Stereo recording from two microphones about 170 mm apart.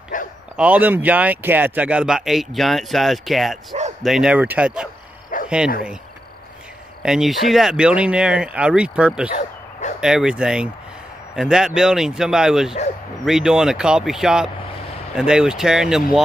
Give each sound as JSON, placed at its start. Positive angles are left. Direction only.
{"t": 0.1, "sound": "bow-wow", "side_deg": 50}
{"t": 0.6, "sound": "speech", "side_deg": -10}
{"t": 5.3, "sound": "dog", "side_deg": 50}
{"t": 7.0, "sound": "speech", "side_deg": -5}
{"t": 9.3, "sound": "bow-wow", "side_deg": 45}
{"t": 9.9, "sound": "speech", "side_deg": -5}